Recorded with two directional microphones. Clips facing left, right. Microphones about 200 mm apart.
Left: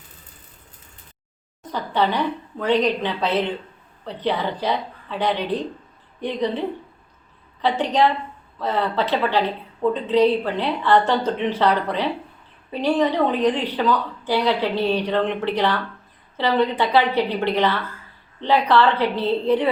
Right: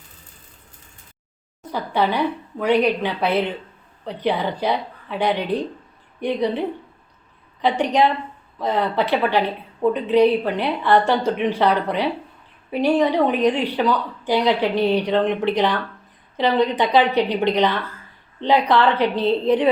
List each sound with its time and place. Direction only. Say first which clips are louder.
1.6 s a woman's voice: right 1 dB; 10° right (ahead or behind)